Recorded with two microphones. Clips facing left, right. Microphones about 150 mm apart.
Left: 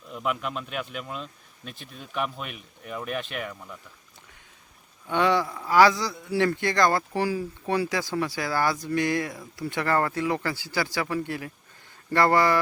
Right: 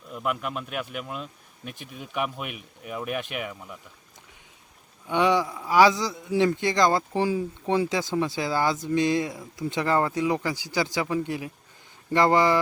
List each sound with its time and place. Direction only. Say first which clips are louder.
0.1 s speech: even; 5° right (ahead or behind)
5.0 s a man's voice: right 1 dB; 15° right (ahead or behind)